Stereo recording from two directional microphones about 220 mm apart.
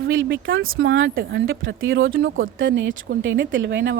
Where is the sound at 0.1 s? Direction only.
60° right (ahead or behind).